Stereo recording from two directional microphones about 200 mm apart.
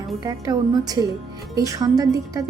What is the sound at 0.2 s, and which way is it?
A woman's voice, 15° right (ahead or behind).